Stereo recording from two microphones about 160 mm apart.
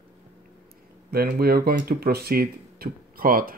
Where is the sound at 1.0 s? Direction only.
70° right (ahead or behind).